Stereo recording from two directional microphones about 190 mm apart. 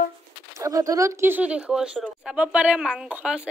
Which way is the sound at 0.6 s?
20° right (ahead or behind).